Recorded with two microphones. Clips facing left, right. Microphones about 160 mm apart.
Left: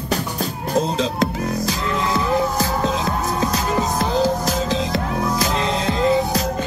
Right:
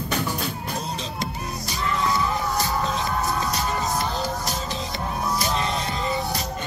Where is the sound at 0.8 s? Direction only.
90° left.